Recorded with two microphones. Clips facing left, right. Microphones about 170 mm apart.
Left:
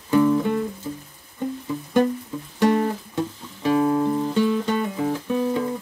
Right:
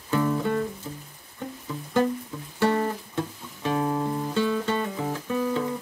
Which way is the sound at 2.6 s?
15° left (ahead or behind).